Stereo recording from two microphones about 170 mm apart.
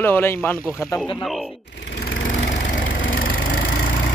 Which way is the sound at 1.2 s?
Centre (ahead or behind).